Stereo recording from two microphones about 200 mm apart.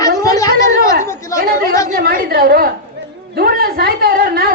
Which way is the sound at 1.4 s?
45° right (ahead or behind).